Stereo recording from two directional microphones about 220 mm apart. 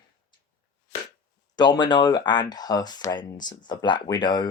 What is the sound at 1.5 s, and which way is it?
Speech, 20° left (ahead or behind).